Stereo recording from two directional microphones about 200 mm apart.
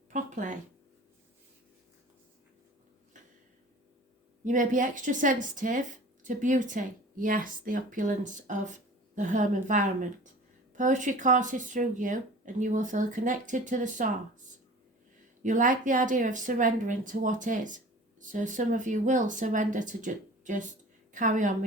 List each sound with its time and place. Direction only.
0.1 s a sound: 40° right (ahead or behind)
4.4 s speech: 40° right (ahead or behind)
15.4 s a woman's voice: 40° right (ahead or behind)